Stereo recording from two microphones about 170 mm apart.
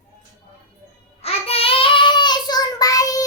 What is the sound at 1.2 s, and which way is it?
Child singing, 35° left (ahead or behind).